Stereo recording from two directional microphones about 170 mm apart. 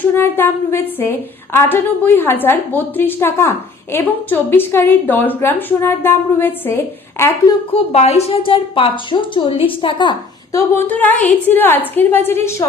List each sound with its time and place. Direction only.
0.0 s a woman's voice: 10° left (ahead or behind)
7.7 s a woman's voice: 40° left (ahead or behind); by 12.6 s 15° left (ahead or behind)